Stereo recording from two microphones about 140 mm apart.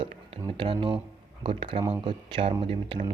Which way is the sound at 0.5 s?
35° right (ahead or behind).